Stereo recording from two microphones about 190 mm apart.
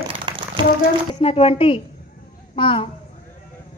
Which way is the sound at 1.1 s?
30° left (ahead or behind).